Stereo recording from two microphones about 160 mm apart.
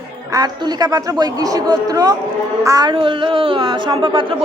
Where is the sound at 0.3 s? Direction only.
25° right (ahead or behind).